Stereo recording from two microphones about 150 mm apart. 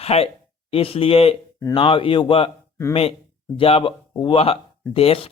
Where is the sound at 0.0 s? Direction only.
45° left (ahead or behind).